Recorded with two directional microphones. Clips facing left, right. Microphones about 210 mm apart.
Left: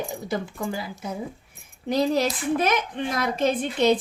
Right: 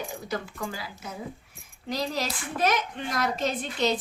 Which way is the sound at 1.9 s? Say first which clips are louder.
Left 8 dB; 55° left (ahead or behind).